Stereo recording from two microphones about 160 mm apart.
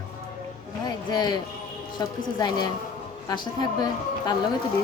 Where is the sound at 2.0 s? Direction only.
25° left (ahead or behind).